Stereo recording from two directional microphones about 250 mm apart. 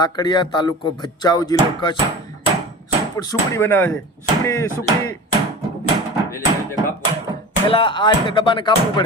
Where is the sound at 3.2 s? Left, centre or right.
Centre.